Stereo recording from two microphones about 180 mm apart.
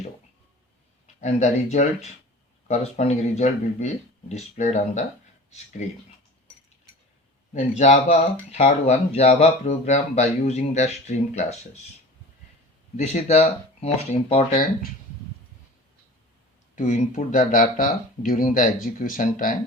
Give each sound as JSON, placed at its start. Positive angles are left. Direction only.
{"t": 1.0, "sound": "speech", "side_deg": 40}
{"t": 7.5, "sound": "speech", "side_deg": 40}
{"t": 13.0, "sound": "speech", "side_deg": 40}
{"t": 16.7, "sound": "speech", "side_deg": 45}